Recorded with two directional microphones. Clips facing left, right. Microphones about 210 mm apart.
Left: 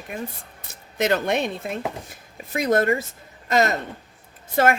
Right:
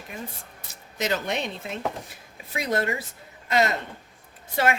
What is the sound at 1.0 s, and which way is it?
A woman's voice, 55° left (ahead or behind).